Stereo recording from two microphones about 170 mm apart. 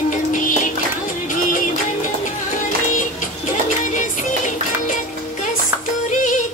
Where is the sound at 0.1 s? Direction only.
50° left (ahead or behind).